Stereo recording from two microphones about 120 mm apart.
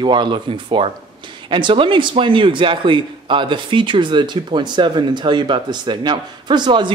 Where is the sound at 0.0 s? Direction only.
40° right (ahead or behind).